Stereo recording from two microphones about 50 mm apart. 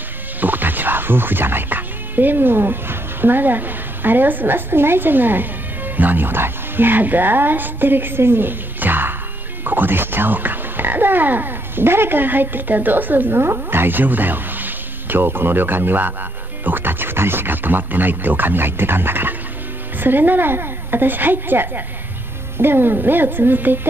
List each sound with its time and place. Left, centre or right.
0.4 s speech: right
13.4 s speech: right